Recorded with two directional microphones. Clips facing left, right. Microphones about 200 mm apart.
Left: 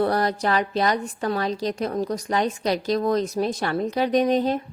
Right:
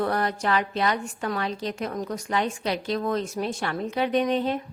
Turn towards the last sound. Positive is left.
turn(degrees=40)  # may be behind; listen again after turning